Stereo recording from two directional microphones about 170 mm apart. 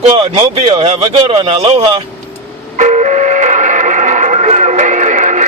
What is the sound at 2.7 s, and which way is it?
Radio, 45° right (ahead or behind).